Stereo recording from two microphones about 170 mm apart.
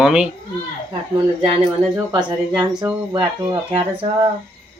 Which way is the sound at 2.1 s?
25° right (ahead or behind).